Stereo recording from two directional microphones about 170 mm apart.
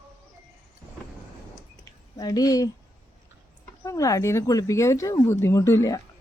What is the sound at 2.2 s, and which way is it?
Speech, 20° left (ahead or behind).